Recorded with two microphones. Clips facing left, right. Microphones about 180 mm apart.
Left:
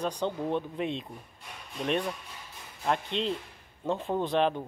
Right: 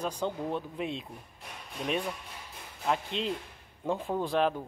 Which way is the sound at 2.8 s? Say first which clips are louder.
Left 2 dB; 5° right (ahead or behind).